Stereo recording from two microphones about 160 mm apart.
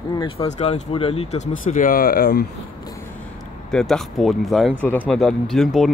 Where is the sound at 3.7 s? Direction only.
5° left (ahead or behind).